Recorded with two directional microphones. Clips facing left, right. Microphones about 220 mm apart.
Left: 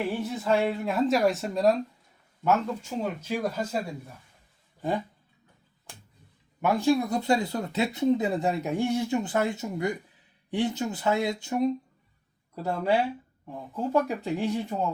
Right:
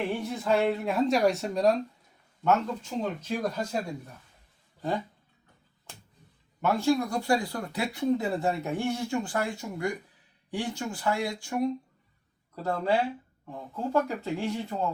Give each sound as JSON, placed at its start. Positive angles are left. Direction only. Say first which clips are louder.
{"t": 0.2, "sound": "speech", "louder": "left 1 dB", "side_deg": 0}
{"t": 6.6, "sound": "speech", "louder": "left 2 dB", "side_deg": 15}
{"t": 12.6, "sound": "speech", "louder": "left 1 dB", "side_deg": 10}